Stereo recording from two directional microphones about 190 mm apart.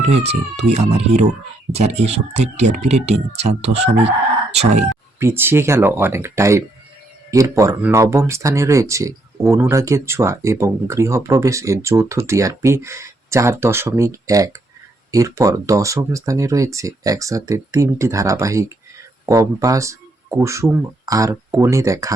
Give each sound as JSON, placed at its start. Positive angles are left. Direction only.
{"t": 0.1, "sound": "speech", "side_deg": -35}
{"t": 5.2, "sound": "speech", "side_deg": -10}